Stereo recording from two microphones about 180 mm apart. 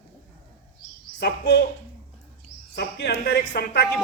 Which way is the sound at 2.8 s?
60° left (ahead or behind).